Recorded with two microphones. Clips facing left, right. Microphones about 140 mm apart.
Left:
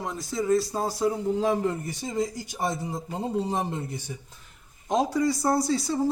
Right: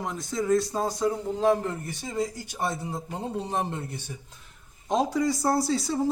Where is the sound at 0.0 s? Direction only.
Centre (ahead or behind); by 2.7 s 15° left (ahead or behind).